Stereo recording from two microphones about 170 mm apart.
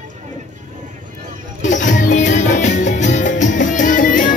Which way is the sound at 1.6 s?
45° left (ahead or behind).